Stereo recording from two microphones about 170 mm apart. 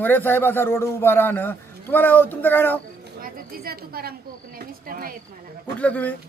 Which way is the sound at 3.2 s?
60° right (ahead or behind).